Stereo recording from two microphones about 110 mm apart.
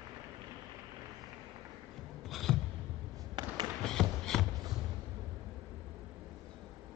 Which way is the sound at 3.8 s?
5° left (ahead or behind).